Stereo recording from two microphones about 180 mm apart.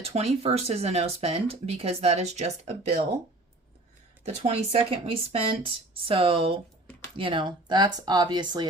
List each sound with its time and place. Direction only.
0.0 s speech: 35° right (ahead or behind)
4.4 s speech: 35° right (ahead or behind)